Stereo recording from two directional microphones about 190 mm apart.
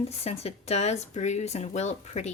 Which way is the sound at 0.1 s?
35° left (ahead or behind).